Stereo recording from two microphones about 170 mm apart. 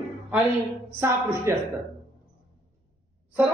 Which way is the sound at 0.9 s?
15° right (ahead or behind).